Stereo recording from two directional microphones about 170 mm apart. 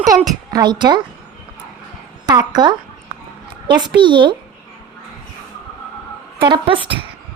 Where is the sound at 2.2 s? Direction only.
25° right (ahead or behind).